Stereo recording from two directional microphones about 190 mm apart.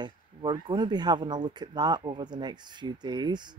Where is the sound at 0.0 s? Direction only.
25° right (ahead or behind).